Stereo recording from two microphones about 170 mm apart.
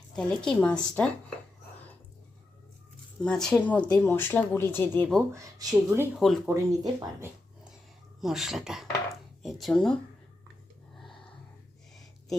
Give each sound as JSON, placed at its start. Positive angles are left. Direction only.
{"t": 0.2, "sound": "a woman's voice", "side_deg": 5}
{"t": 3.2, "sound": "speech", "side_deg": 5}
{"t": 5.3, "sound": "speech", "side_deg": -20}
{"t": 6.1, "sound": "a woman's voice", "side_deg": 0}
{"t": 6.5, "sound": "speech", "side_deg": -15}
{"t": 8.2, "sound": "a woman's voice", "side_deg": 0}